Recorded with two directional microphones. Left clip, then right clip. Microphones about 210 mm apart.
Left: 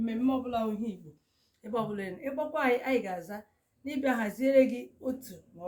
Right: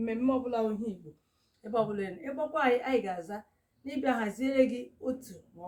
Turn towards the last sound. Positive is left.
turn(degrees=-15)  # may be behind; listen again after turning